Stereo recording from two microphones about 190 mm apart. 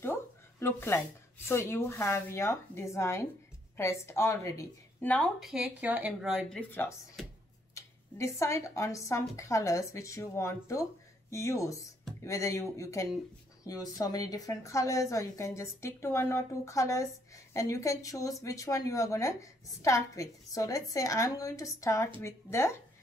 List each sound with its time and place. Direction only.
0.0 s a sound: 15° left (ahead or behind)
1.5 s a woman's voice: 15° left (ahead or behind); by 6.6 s 5° right (ahead or behind)
6.7 s a woman's voice: 10° left (ahead or behind)